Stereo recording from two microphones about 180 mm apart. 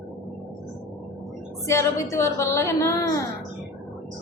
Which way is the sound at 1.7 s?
15° left (ahead or behind).